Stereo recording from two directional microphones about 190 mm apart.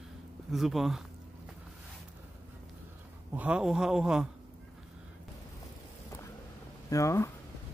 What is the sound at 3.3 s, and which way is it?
A man's voice, 5° right (ahead or behind).